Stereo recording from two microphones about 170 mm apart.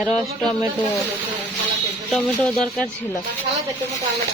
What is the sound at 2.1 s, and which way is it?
Speech, 5° left (ahead or behind).